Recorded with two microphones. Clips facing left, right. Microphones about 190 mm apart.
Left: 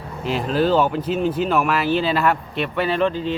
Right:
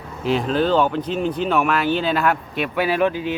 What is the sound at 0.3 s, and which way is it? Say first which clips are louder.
Speech: even; centre (ahead or behind).